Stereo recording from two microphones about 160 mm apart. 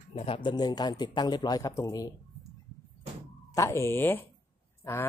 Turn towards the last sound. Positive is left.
turn(degrees=15)  # may be behind; listen again after turning